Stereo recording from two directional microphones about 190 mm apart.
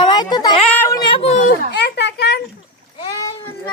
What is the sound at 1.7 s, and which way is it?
Speech, 60° left (ahead or behind).